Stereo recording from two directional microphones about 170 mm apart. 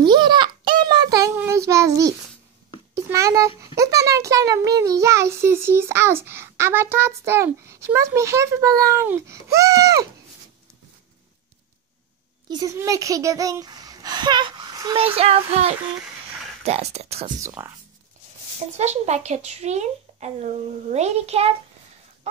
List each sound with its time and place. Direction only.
0.0 s a sound: 25° right (ahead or behind)
1.3 s child singing: 15° right (ahead or behind)
3.1 s a sound: 20° right (ahead or behind)
4.6 s a child's voice: 20° right (ahead or behind)
12.4 s a child's voice: 20° right (ahead or behind)
15.0 s speech: 35° right (ahead or behind)
17.4 s a child's voice: 15° right (ahead or behind)
18.8 s speech: 40° right (ahead or behind)